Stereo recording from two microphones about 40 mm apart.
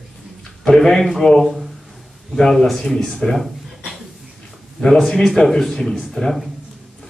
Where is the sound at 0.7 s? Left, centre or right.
Centre.